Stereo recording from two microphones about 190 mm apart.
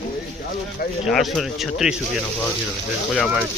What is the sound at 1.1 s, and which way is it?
Speech, centre (ahead or behind).